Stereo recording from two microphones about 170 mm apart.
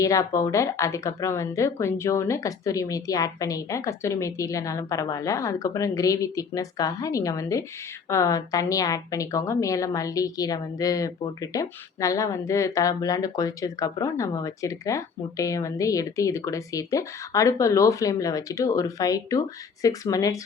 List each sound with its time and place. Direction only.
0.0 s a woman's voice: 20° left (ahead or behind)